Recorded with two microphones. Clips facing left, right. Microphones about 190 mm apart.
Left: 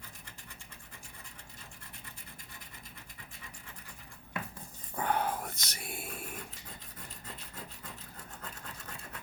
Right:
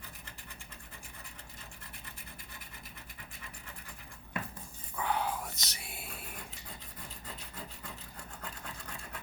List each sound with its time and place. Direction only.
4.9 s dog: 50° left (ahead or behind)